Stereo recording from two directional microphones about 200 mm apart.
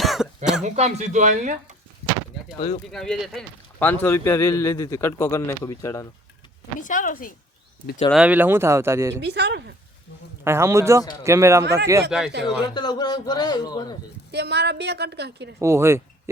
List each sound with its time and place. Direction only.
0.0 s throat clearing: centre (ahead or behind)
0.6 s speech: 35° right (ahead or behind)
2.6 s a man's voice: 30° left (ahead or behind)
2.9 s a man's voice: centre (ahead or behind)
6.7 s speech: 40° left (ahead or behind)
8.1 s speech: 5° right (ahead or behind)
9.2 s a woman's voice: 55° right (ahead or behind)
10.4 s speech: 15° right (ahead or behind)
12.1 s speech: 5° right (ahead or behind)
12.5 s a man's voice: 20° left (ahead or behind)
14.3 s a woman's voice: 55° right (ahead or behind)
15.5 s speech: 15° right (ahead or behind)